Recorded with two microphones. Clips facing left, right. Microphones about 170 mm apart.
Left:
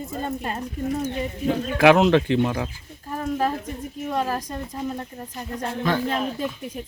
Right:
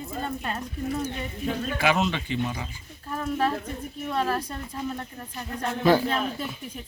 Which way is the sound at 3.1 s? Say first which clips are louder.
Left 2 dB; 35° left (ahead or behind).